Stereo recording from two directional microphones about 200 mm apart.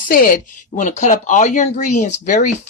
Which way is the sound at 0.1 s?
45° left (ahead or behind).